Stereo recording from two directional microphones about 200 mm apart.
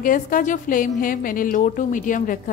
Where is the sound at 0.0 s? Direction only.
45° left (ahead or behind).